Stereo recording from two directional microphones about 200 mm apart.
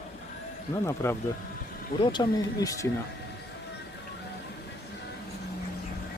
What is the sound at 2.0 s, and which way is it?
Speech, 20° left (ahead or behind).